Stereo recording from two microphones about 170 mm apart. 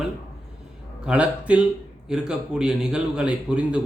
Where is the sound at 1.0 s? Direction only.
5° right (ahead or behind).